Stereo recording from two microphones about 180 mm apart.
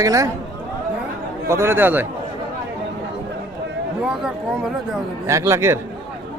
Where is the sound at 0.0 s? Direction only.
20° right (ahead or behind).